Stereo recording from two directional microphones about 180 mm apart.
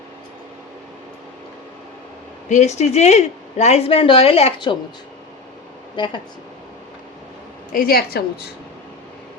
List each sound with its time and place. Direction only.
2.5 s speech: 40° left (ahead or behind)
6.0 s speech: 25° left (ahead or behind)
7.7 s a woman's voice: 55° left (ahead or behind)